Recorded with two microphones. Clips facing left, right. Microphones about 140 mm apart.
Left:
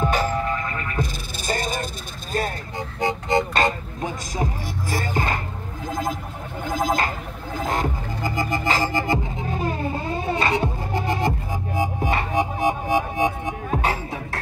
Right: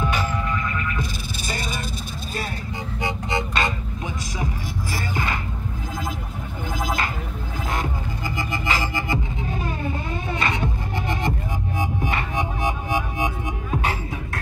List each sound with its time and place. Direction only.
0.0 s music: 40° left (ahead or behind)
1.5 s vehicle: 45° left (ahead or behind)
3.0 s vehicle: 45° left (ahead or behind)
4.9 s music: 45° left (ahead or behind)
6.7 s a sound: 40° left (ahead or behind)
7.6 s music: 40° left (ahead or behind)